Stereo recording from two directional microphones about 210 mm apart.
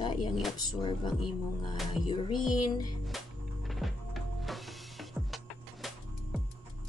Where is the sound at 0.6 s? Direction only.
20° left (ahead or behind).